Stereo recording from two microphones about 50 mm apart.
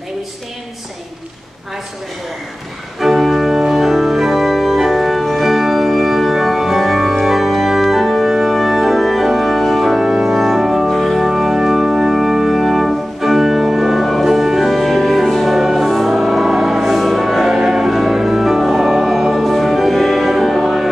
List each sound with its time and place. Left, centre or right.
3.0 s organ: centre
10.2 s music: centre
10.9 s organ: centre
17.6 s music: centre